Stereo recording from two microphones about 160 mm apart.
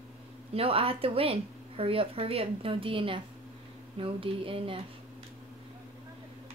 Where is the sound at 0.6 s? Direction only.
35° right (ahead or behind).